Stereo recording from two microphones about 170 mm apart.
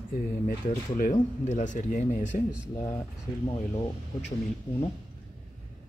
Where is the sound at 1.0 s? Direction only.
45° left (ahead or behind).